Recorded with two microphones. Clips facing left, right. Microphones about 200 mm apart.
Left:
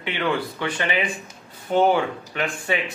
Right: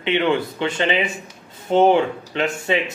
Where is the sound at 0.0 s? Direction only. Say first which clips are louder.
Right 5 dB; 25° right (ahead or behind).